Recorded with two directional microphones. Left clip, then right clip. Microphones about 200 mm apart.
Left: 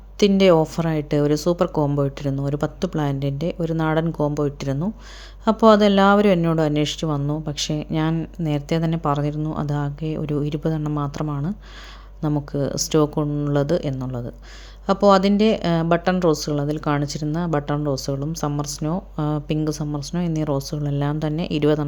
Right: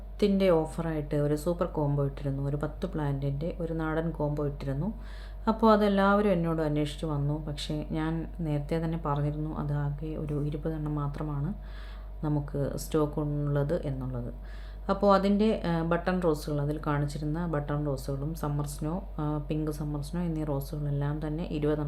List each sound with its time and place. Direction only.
0.2 s speech: 45° left (ahead or behind)